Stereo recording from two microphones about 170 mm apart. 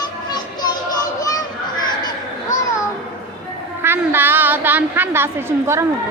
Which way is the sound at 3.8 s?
15° right (ahead or behind).